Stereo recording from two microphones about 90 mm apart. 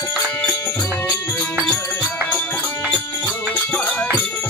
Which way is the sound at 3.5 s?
15° left (ahead or behind).